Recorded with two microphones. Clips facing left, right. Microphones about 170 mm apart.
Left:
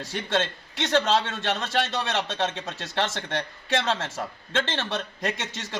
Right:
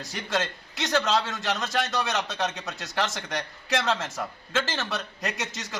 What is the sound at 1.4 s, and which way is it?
A man's voice, 25° left (ahead or behind).